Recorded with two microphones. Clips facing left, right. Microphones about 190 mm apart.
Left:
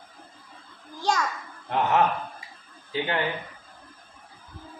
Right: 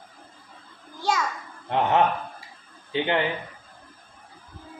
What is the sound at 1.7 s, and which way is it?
Speech, 25° right (ahead or behind).